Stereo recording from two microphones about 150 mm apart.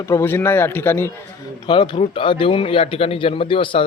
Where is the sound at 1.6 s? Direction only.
30° left (ahead or behind).